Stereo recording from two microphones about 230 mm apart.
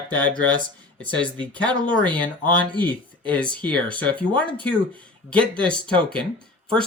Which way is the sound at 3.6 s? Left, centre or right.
Centre.